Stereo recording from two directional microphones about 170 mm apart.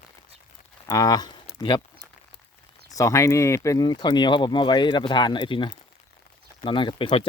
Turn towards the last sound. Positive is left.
turn(degrees=30)  # may be behind; listen again after turning